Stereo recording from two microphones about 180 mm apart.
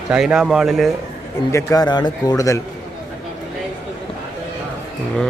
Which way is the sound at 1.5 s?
20° left (ahead or behind).